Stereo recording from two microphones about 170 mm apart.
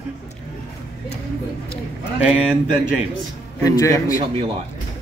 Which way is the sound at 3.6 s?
20° left (ahead or behind).